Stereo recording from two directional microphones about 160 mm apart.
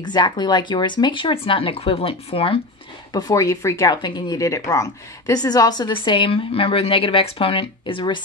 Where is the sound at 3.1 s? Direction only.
20° left (ahead or behind).